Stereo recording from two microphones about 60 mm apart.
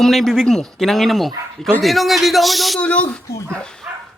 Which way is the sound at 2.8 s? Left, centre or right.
Left.